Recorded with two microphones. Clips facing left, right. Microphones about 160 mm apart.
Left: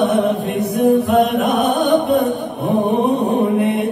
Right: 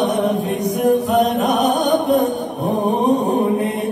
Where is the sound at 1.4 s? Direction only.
Centre (ahead or behind).